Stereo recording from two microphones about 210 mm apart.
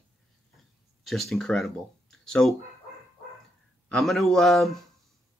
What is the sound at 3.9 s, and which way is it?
Speech, centre (ahead or behind).